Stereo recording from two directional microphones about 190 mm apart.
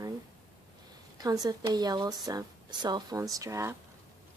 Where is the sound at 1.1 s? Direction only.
20° right (ahead or behind).